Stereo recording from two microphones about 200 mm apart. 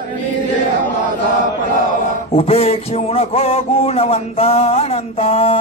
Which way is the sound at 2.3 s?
30° left (ahead or behind).